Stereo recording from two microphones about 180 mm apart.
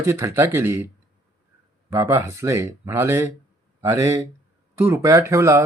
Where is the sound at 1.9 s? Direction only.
15° right (ahead or behind).